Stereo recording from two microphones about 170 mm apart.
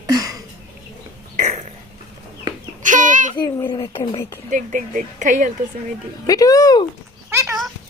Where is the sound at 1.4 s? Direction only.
45° right (ahead or behind).